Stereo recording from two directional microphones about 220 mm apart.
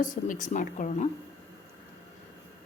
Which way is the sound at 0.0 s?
35° left (ahead or behind).